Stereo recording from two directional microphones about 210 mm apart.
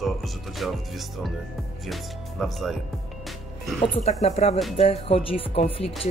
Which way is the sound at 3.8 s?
30° left (ahead or behind).